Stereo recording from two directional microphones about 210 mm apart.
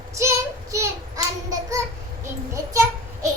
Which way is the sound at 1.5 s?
15° right (ahead or behind).